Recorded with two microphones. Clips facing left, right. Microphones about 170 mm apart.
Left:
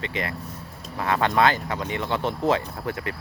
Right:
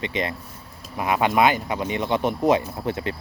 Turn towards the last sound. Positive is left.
turn(degrees=-20)  # may be behind; listen again after turning